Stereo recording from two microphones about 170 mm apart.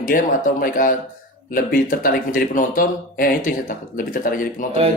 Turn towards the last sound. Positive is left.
turn(degrees=55)  # may be behind; listen again after turning